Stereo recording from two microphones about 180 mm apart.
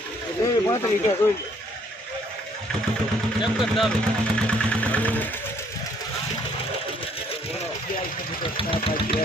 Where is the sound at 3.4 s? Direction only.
Centre (ahead or behind).